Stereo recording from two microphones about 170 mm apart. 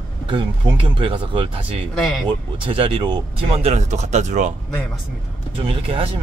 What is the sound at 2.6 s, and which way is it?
Speech, 30° right (ahead or behind).